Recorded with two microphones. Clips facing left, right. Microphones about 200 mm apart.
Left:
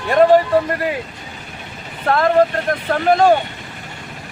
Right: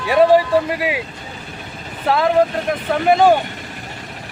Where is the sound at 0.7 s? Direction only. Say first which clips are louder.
Even; 5° right (ahead or behind).